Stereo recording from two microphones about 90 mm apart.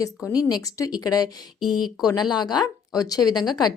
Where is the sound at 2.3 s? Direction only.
50° left (ahead or behind).